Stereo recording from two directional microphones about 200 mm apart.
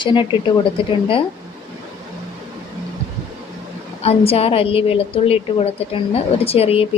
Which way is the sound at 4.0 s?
30° left (ahead or behind).